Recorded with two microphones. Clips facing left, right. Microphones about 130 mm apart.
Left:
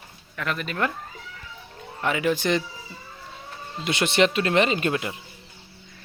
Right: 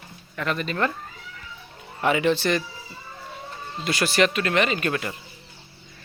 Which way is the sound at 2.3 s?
20° left (ahead or behind).